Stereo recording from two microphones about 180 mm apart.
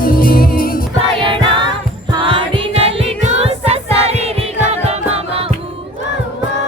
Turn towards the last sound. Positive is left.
turn(degrees=-35)  # may be behind; listen again after turning